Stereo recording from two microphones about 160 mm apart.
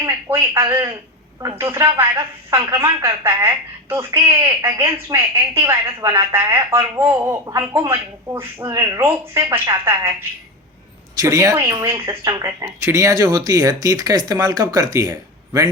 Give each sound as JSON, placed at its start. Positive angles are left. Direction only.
{"t": 0.0, "sound": "a woman's voice", "side_deg": -15}
{"t": 11.2, "sound": "speech", "side_deg": -20}